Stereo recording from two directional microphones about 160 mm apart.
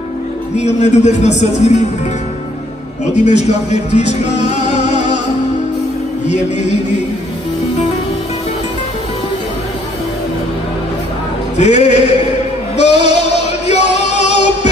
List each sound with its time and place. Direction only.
0.6 s a man's voice: 45° left (ahead or behind)
3.3 s music: 45° left (ahead or behind)
6.2 s a man's voice: 45° left (ahead or behind)
11.5 s a man's voice: 45° left (ahead or behind)
12.7 s music: 45° left (ahead or behind)